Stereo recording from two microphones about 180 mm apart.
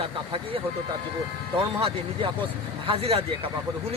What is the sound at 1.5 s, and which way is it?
Speech, 30° right (ahead or behind).